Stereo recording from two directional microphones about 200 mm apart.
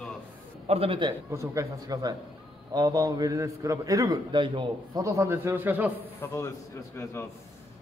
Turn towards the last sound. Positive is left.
turn(degrees=15)  # may be behind; listen again after turning